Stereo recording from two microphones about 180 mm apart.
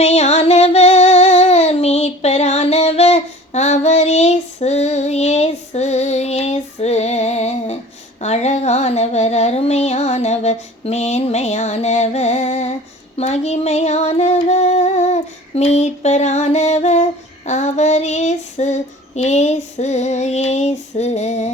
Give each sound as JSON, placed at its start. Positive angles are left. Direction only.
{"t": 0.0, "sound": "child singing", "side_deg": 35}
{"t": 8.2, "sound": "a sound", "side_deg": 35}
{"t": 13.1, "sound": "music", "side_deg": 35}